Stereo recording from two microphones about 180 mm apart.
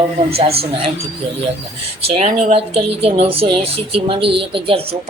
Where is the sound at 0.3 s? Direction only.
35° right (ahead or behind).